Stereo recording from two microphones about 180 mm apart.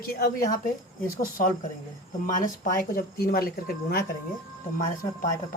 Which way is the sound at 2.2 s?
50° left (ahead or behind).